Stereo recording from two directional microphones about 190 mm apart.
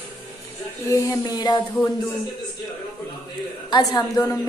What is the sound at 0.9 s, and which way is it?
Speech, 15° left (ahead or behind).